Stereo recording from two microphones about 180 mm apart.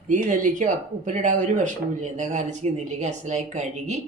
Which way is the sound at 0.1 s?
45° right (ahead or behind).